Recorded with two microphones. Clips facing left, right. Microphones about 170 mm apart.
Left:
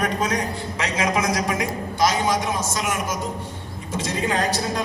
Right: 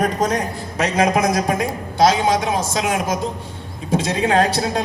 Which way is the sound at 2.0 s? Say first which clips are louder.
Right 5 dB; 70° right (ahead or behind).